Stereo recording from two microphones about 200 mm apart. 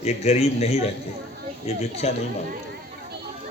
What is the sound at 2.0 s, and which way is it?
Speech, 30° left (ahead or behind).